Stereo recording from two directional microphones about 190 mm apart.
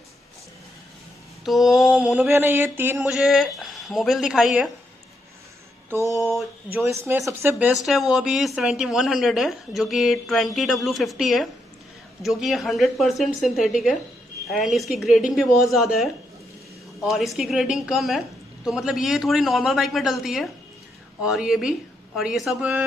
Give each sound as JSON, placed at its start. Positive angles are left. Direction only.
{"t": 1.4, "sound": "speech", "side_deg": 0}
{"t": 5.9, "sound": "a sound", "side_deg": 15}
{"t": 6.2, "sound": "speech", "side_deg": -10}